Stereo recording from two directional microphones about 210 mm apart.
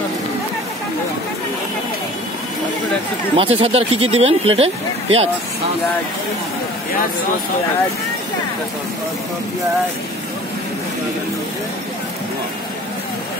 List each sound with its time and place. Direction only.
3.3 s speech: 25° right (ahead or behind)